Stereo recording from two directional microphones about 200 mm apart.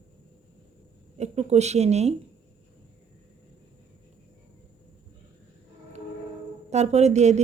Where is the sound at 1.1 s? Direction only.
35° right (ahead or behind).